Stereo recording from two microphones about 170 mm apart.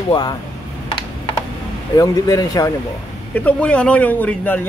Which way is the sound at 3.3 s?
5° left (ahead or behind).